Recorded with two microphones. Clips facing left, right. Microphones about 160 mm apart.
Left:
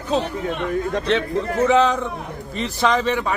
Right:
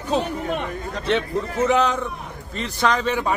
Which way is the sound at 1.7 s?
Centre (ahead or behind).